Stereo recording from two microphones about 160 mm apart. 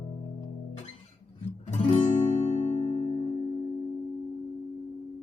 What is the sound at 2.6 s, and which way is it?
Music, 45° left (ahead or behind).